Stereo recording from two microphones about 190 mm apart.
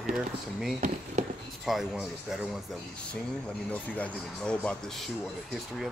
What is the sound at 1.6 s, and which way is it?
Speech, 5° right (ahead or behind).